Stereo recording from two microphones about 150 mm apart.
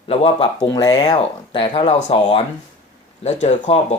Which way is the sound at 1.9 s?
50° left (ahead or behind).